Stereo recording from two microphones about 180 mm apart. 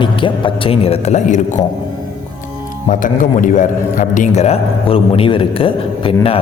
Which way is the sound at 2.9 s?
45° left (ahead or behind).